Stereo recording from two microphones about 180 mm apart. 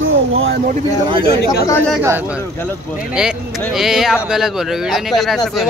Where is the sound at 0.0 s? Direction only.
90° right.